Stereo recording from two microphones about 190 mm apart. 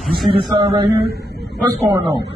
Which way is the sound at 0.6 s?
25° right (ahead or behind).